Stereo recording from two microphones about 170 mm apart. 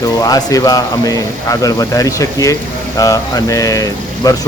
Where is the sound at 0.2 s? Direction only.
20° left (ahead or behind).